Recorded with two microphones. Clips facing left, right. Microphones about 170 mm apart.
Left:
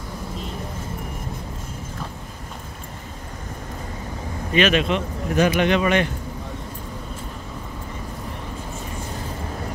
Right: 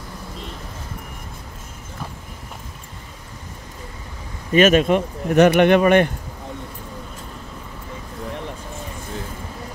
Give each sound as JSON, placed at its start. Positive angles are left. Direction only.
{"t": 4.6, "sound": "speech", "side_deg": -45}